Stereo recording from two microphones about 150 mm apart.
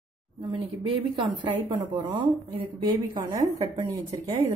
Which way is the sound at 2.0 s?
30° right (ahead or behind).